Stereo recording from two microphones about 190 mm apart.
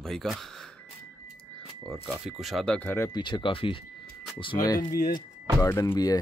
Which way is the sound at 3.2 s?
25° left (ahead or behind).